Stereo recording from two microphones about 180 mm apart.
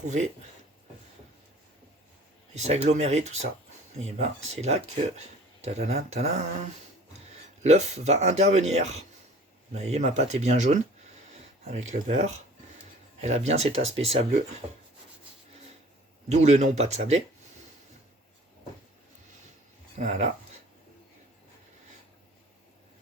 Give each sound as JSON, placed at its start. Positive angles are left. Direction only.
{"t": 0.0, "sound": "speech", "side_deg": -40}
{"t": 2.6, "sound": "speech", "side_deg": -35}
{"t": 7.6, "sound": "speech", "side_deg": -40}
{"t": 11.9, "sound": "speech", "side_deg": -40}
{"t": 13.5, "sound": "speech", "side_deg": -35}
{"t": 16.3, "sound": "speech", "side_deg": -40}
{"t": 20.0, "sound": "speech", "side_deg": -40}